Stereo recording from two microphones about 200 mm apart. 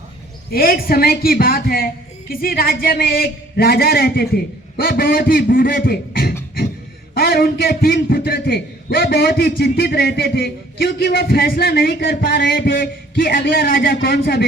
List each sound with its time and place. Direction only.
0.5 s a man's voice: 50° left (ahead or behind)